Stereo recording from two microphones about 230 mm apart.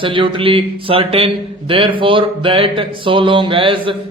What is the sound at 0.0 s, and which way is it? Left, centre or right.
A man's voice, right.